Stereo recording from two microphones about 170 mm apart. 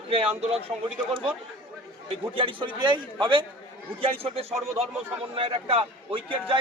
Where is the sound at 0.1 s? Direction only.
35° right (ahead or behind).